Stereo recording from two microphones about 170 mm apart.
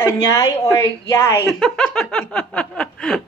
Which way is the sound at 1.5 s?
Centre (ahead or behind).